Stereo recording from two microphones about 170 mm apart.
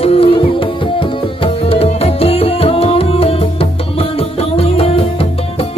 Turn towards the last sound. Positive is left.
turn(degrees=35)  # may be behind; listen again after turning